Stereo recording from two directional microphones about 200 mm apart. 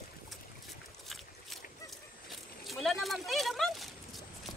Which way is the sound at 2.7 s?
Centre (ahead or behind).